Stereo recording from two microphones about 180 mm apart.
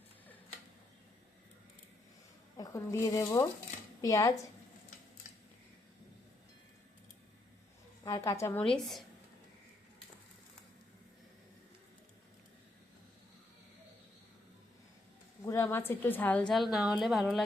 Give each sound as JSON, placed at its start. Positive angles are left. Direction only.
{"t": 2.6, "sound": "speech", "side_deg": 20}
{"t": 8.0, "sound": "a woman's voice", "side_deg": 15}
{"t": 15.4, "sound": "a woman's voice", "side_deg": 15}